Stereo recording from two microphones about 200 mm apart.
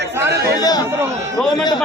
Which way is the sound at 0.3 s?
55° right (ahead or behind).